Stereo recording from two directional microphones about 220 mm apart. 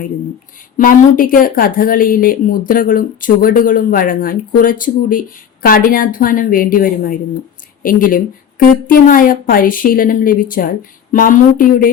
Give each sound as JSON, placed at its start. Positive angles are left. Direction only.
{"t": 0.8, "sound": "a woman's voice", "side_deg": 40}